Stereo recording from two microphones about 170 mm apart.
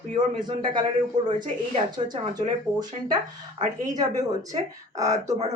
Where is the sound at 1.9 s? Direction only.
25° right (ahead or behind).